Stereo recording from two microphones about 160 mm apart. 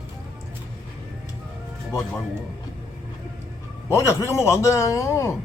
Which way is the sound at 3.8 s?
15° left (ahead or behind).